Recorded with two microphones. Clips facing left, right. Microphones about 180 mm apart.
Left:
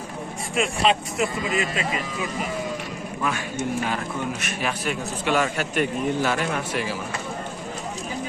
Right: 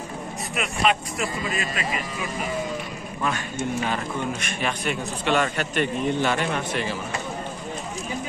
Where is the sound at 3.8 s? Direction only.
5° left (ahead or behind).